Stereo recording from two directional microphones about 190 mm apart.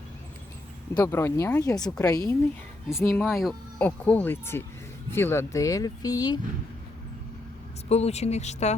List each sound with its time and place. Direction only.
0.9 s speech: 15° left (ahead or behind)
7.9 s speech: 35° left (ahead or behind)